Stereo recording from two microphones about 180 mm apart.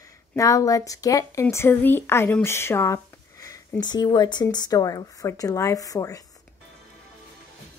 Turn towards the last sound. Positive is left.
turn(degrees=20)  # may be behind; listen again after turning